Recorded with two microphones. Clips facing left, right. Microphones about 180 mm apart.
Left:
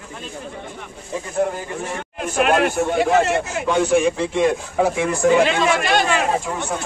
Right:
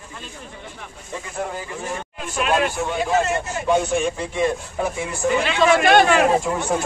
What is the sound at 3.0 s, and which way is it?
A man's voice, 70° left (ahead or behind).